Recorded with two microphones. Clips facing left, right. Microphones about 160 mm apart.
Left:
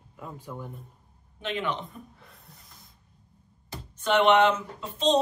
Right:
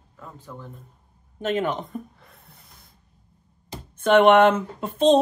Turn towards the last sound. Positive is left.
turn(degrees=-50)  # may be behind; listen again after turning